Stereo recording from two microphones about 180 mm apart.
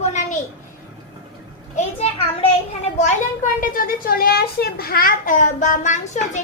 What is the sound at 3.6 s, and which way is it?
A child's voice, 50° left (ahead or behind).